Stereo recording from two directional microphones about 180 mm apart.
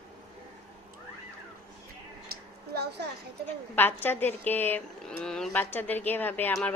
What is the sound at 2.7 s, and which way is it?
Children playing, 60° right (ahead or behind).